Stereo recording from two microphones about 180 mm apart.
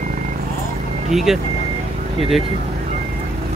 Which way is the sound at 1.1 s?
Centre (ahead or behind).